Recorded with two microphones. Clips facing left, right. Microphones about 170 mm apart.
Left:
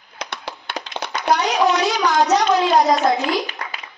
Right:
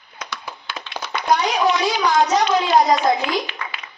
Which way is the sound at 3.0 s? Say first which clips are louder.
Left 1 dB; 45° left (ahead or behind).